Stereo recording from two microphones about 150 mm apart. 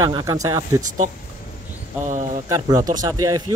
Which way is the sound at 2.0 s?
50° right (ahead or behind).